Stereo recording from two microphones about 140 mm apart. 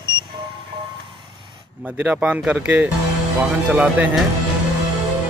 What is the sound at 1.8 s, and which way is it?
Speech, 10° right (ahead or behind).